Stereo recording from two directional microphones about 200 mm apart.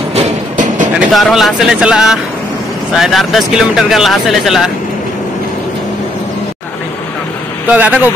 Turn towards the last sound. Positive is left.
turn(degrees=-5)  # may be behind; listen again after turning